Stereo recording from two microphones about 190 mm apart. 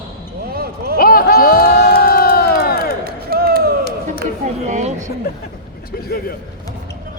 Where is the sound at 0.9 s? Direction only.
50° left (ahead or behind).